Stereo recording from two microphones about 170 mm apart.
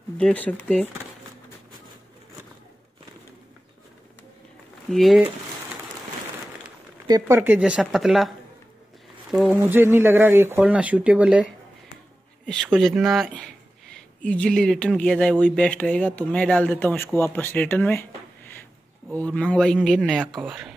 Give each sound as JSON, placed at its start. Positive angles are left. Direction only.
{"t": 0.2, "sound": "speech", "side_deg": 10}
{"t": 4.8, "sound": "speech", "side_deg": 0}
{"t": 7.1, "sound": "speech", "side_deg": -20}
{"t": 9.6, "sound": "speech", "side_deg": -15}
{"t": 12.7, "sound": "speech", "side_deg": 0}
{"t": 19.1, "sound": "speech", "side_deg": 5}